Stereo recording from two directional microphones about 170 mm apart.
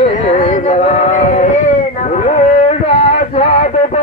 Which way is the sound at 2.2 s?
45° left (ahead or behind).